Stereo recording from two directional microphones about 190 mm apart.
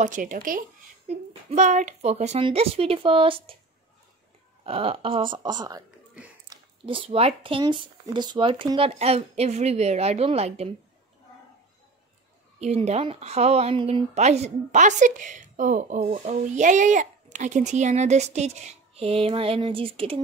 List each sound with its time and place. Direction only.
0.0 s a woman's voice: 45° right (ahead or behind); by 3.5 s 30° right (ahead or behind)
4.6 s a woman's voice: 30° right (ahead or behind)
12.5 s a woman's voice: 35° right (ahead or behind)